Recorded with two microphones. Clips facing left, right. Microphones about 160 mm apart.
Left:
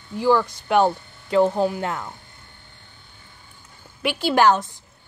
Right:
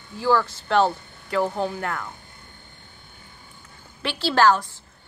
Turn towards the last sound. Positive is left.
turn(degrees=20)  # may be behind; listen again after turning